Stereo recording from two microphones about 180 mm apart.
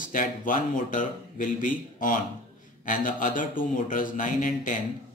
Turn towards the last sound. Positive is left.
turn(degrees=45)  # may be behind; listen again after turning